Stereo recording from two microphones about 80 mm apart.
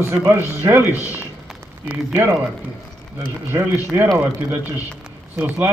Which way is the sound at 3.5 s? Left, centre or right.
Right.